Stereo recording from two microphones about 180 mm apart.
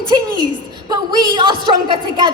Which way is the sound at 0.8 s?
20° right (ahead or behind).